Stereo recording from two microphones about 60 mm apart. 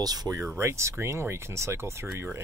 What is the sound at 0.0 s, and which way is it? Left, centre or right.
Speech, right.